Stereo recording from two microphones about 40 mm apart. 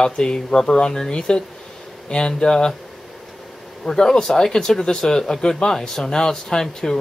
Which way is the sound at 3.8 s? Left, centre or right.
Centre.